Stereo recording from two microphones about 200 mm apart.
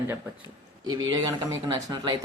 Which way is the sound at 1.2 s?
20° right (ahead or behind).